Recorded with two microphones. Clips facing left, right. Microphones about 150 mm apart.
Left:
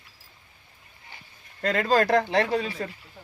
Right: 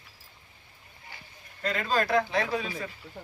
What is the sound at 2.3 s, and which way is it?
Speech, 70° left (ahead or behind).